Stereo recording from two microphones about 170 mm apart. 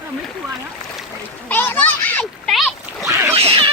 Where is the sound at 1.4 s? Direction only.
10° left (ahead or behind).